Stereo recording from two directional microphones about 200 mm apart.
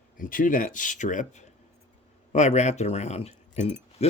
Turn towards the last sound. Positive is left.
turn(degrees=35)  # may be behind; listen again after turning